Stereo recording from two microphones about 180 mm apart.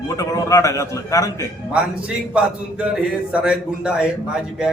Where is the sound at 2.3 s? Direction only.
5° right (ahead or behind).